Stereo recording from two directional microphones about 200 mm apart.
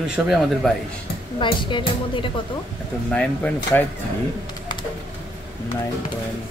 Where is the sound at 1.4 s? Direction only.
25° left (ahead or behind).